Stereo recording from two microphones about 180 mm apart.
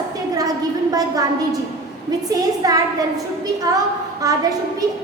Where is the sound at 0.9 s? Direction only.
20° right (ahead or behind).